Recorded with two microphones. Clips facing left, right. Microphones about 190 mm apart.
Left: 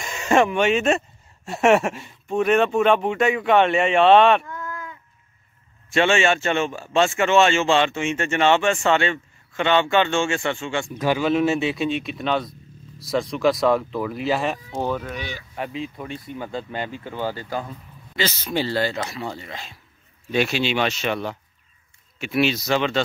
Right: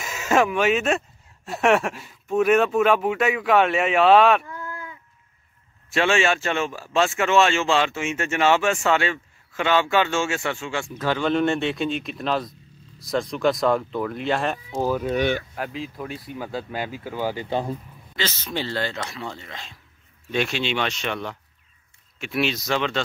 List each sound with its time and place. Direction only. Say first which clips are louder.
0.0 s a man's voice: left 2 dB; 5° right (ahead or behind)
4.5 s a sound: left 2 dB; 30° right (ahead or behind)
5.9 s a man's voice: left 2 dB; centre (ahead or behind)
11.0 s a man's voice: left 2 dB; 10° left (ahead or behind)
15.1 s speech: right 11 dB; 60° right (ahead or behind)
15.5 s a man's voice: left 1 dB; centre (ahead or behind)
17.5 s speech: right 4 dB; 30° right (ahead or behind)
18.1 s a man's voice: left 4 dB; 10° left (ahead or behind)